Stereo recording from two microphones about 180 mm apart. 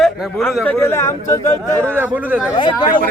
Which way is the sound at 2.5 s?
25° left (ahead or behind).